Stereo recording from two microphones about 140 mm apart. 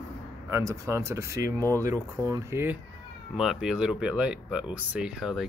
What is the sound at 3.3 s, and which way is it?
Speech, 5° right (ahead or behind).